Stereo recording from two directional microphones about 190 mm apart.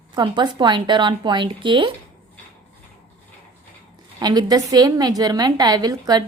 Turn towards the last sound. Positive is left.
turn(degrees=-20)  # may be behind; listen again after turning